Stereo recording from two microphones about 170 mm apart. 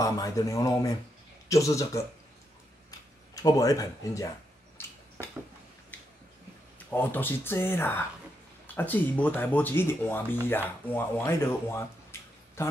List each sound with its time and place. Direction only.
0.0 s speech: 20° left (ahead or behind)
3.3 s speech: 20° left (ahead or behind)
4.8 s a sound: 15° left (ahead or behind)
6.9 s speech: 10° left (ahead or behind)